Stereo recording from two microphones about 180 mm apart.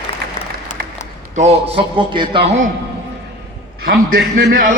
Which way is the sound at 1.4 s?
35° right (ahead or behind).